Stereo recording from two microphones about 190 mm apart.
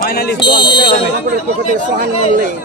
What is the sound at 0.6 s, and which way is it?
Speech, 25° left (ahead or behind).